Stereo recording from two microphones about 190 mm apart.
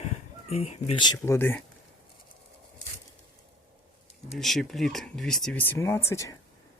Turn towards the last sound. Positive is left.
turn(degrees=15)  # may be behind; listen again after turning